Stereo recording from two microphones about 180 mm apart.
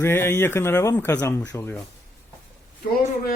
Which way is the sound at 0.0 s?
15° left (ahead or behind).